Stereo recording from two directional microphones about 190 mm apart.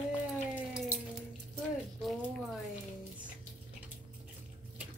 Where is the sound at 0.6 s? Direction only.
10° right (ahead or behind).